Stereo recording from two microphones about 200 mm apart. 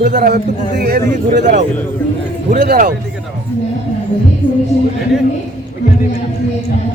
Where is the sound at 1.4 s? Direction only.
35° right (ahead or behind).